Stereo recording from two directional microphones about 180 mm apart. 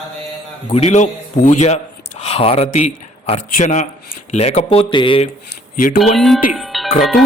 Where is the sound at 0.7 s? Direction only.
40° left (ahead or behind).